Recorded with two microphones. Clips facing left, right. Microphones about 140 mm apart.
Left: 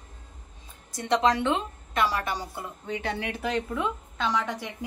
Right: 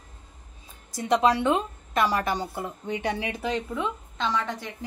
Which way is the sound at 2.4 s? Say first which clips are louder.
Right 4 dB; 20° right (ahead or behind).